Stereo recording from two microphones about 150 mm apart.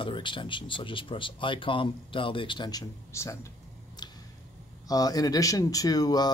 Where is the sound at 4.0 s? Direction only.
30° left (ahead or behind).